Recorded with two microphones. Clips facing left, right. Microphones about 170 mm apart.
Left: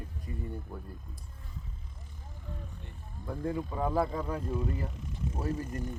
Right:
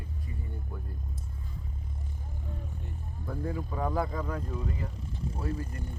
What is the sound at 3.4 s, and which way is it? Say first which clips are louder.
Speech: left 2 dB; 5° left (ahead or behind).